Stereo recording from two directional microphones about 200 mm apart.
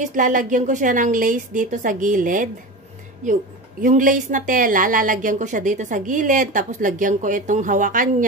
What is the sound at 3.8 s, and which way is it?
A woman's voice, 40° right (ahead or behind).